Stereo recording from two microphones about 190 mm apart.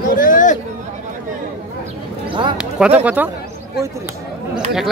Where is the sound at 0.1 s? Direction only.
45° left (ahead or behind).